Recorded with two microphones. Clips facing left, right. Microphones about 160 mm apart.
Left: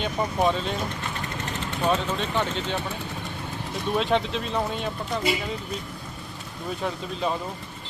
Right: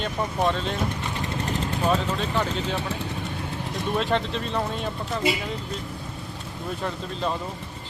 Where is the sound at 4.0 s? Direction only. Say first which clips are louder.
Left 2 dB; centre (ahead or behind).